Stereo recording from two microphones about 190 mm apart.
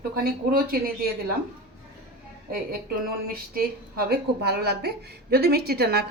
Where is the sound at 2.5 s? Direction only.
50° right (ahead or behind).